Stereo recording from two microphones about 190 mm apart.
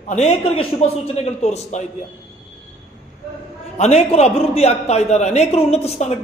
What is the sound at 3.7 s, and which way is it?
A man's voice, 35° left (ahead or behind).